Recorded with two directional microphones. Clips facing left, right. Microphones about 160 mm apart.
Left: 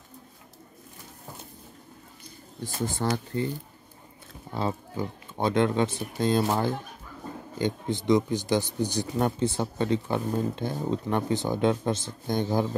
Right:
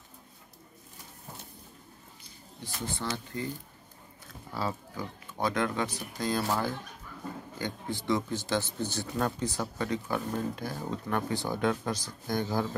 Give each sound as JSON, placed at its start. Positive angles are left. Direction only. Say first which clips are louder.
{"t": 2.6, "sound": "speech", "louder": "left 7 dB", "side_deg": 50}
{"t": 4.5, "sound": "speech", "louder": "left 4 dB", "side_deg": 25}
{"t": 9.4, "sound": "speech", "louder": "left 6 dB", "side_deg": 25}